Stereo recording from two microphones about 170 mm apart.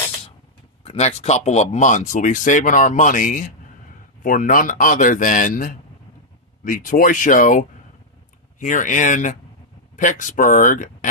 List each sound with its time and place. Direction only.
0.8 s speech: 40° left (ahead or behind)